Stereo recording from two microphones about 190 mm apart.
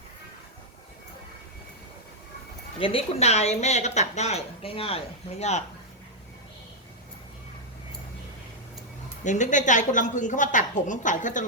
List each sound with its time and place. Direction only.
2.7 s a woman's voice: 30° left (ahead or behind)
9.2 s a woman's voice: 40° left (ahead or behind)